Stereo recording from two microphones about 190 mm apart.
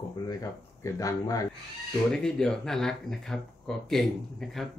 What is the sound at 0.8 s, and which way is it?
Speech, 15° left (ahead or behind).